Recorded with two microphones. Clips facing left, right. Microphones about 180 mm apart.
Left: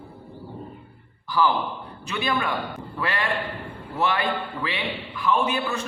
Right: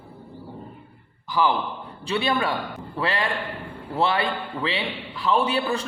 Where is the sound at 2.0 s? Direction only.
30° right (ahead or behind).